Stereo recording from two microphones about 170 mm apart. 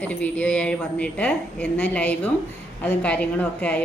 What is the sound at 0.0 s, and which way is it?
Speech, 10° left (ahead or behind).